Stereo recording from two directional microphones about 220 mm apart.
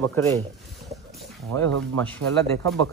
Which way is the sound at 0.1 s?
15° left (ahead or behind).